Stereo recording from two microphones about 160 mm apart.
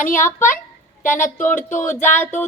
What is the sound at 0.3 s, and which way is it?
Speech, 15° left (ahead or behind).